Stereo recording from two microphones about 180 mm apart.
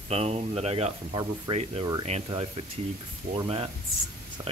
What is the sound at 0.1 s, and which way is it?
Speech, 35° right (ahead or behind).